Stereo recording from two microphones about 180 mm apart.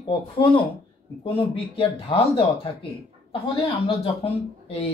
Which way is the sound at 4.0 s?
30° left (ahead or behind).